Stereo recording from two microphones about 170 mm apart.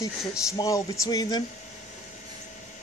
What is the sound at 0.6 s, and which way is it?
Speech, 25° left (ahead or behind).